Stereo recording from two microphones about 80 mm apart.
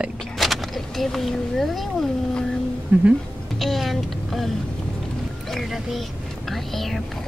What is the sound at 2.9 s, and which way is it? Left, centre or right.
Speech, right.